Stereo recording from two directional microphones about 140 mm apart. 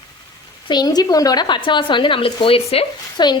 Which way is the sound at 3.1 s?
30° left (ahead or behind).